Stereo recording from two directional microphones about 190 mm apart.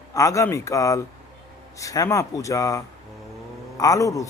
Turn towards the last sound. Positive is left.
turn(degrees=15)  # may be behind; listen again after turning